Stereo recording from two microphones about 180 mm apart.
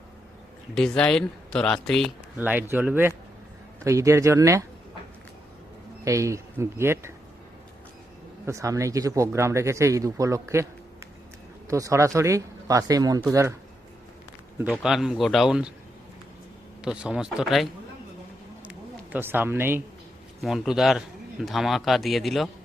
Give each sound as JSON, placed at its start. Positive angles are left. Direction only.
{"t": 0.7, "sound": "speech", "side_deg": 5}
{"t": 2.4, "sound": "speech", "side_deg": -10}
{"t": 6.1, "sound": "speech", "side_deg": -15}
{"t": 8.4, "sound": "speech", "side_deg": -15}
{"t": 11.7, "sound": "speech", "side_deg": -15}
{"t": 14.8, "sound": "speech", "side_deg": 0}
{"t": 16.8, "sound": "speech", "side_deg": -5}
{"t": 18.6, "sound": "a sound", "side_deg": -10}
{"t": 20.4, "sound": "speech", "side_deg": 0}